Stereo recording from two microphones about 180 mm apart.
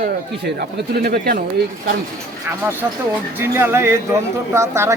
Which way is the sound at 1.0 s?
60° right (ahead or behind).